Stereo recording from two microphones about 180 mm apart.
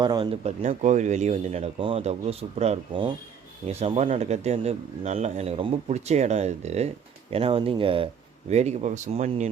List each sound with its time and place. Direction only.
0.0 s speech: 25° right (ahead or behind)
0.4 s speech: 40° right (ahead or behind)